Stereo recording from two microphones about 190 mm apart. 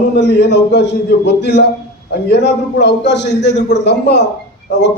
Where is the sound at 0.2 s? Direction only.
60° left (ahead or behind).